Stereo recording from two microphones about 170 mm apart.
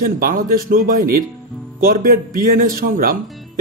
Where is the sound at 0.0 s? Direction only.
55° right (ahead or behind).